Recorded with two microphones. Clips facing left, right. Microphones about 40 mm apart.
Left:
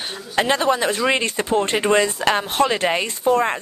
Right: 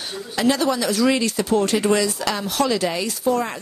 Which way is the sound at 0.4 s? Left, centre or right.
Left.